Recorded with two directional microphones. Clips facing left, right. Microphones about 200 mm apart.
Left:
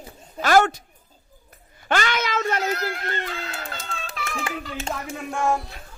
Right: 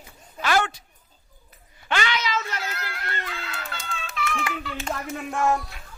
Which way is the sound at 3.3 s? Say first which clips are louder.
Left 3 dB; 40° left (ahead or behind).